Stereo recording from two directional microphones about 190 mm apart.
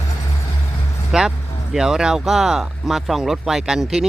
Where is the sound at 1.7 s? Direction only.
5° right (ahead or behind).